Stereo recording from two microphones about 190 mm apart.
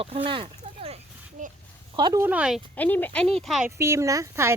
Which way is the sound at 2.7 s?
10° left (ahead or behind).